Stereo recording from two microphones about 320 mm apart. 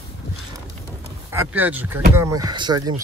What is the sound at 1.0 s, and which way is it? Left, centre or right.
Speech, centre.